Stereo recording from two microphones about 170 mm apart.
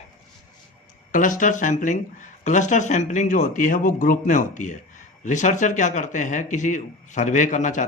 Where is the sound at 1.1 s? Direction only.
50° left (ahead or behind).